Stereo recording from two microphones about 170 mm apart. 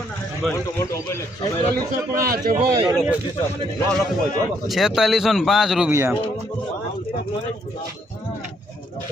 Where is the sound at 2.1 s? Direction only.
60° right (ahead or behind).